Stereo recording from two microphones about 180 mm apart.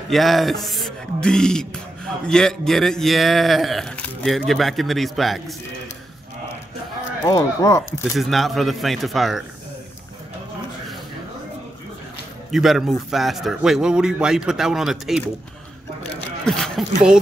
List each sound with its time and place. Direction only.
0.1 s speech: centre (ahead or behind)
7.2 s speech: 20° left (ahead or behind)
8.2 s speech: centre (ahead or behind)
12.4 s speech: centre (ahead or behind)
16.4 s speech: 5° left (ahead or behind)